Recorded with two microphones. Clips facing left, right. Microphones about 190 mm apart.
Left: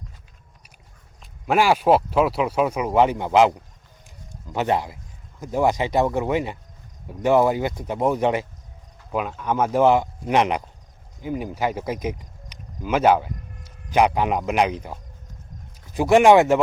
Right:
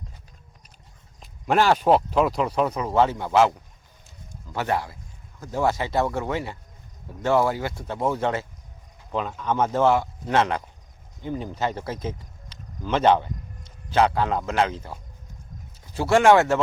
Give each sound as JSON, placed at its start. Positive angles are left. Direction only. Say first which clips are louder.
{"t": 1.2, "sound": "speech", "louder": "left 1 dB", "side_deg": 5}
{"t": 4.0, "sound": "a sound", "louder": "left 2 dB", "side_deg": 15}
{"t": 5.4, "sound": "speech", "louder": "left 3 dB", "side_deg": 15}